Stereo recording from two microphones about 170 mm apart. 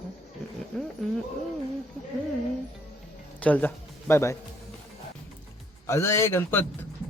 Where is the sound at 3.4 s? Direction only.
10° left (ahead or behind).